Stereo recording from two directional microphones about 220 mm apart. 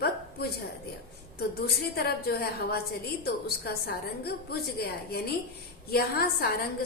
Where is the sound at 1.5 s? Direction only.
45° left (ahead or behind).